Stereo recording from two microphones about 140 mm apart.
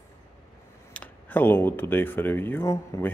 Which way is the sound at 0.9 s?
15° left (ahead or behind).